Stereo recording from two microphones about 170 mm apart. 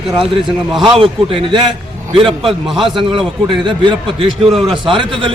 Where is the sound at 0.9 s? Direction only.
30° right (ahead or behind).